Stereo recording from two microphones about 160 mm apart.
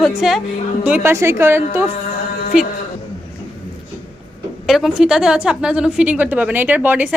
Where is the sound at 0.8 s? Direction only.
10° right (ahead or behind).